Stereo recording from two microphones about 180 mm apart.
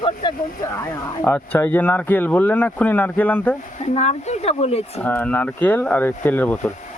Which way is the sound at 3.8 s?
40° left (ahead or behind).